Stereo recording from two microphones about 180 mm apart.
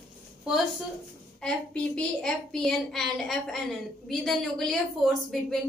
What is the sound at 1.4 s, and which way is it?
A woman's voice, 5° left (ahead or behind).